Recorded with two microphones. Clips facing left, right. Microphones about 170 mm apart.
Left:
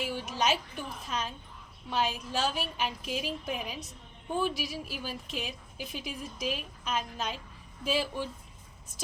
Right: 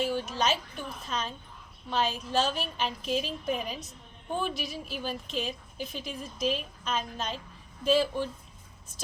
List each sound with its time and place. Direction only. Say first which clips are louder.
0.0 s a woman's voice: right 2 dB; 10° left (ahead or behind)